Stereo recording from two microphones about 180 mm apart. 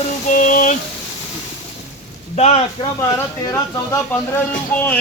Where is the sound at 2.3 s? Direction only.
35° left (ahead or behind).